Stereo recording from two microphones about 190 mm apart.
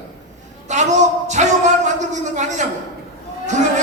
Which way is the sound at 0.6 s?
40° right (ahead or behind).